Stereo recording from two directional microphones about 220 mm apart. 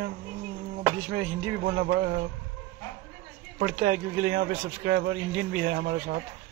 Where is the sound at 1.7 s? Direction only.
40° right (ahead or behind).